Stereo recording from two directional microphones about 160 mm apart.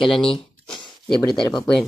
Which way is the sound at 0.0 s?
35° left (ahead or behind).